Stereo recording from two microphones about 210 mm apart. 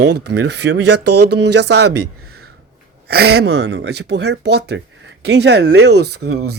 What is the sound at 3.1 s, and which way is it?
Speech, 50° right (ahead or behind).